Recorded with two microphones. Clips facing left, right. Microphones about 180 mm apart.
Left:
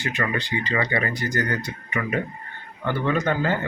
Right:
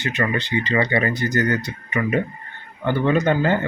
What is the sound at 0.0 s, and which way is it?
Speech, 20° right (ahead or behind).